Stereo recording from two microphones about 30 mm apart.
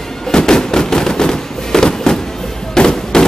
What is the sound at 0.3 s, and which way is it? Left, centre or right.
Fireworks, left.